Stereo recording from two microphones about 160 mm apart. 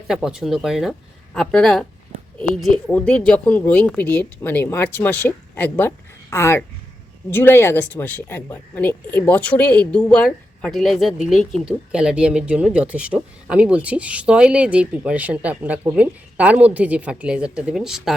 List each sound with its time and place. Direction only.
0.1 s speech: 5° right (ahead or behind)